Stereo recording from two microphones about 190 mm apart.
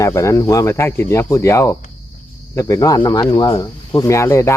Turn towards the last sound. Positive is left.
turn(degrees=15)  # may be behind; listen again after turning